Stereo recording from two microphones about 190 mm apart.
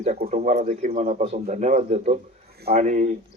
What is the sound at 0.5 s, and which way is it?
A man's voice, 35° right (ahead or behind).